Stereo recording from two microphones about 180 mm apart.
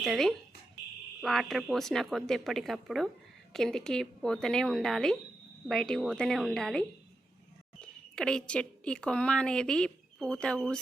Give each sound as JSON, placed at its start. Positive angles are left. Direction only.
{"t": 0.0, "sound": "a woman's voice", "side_deg": 0}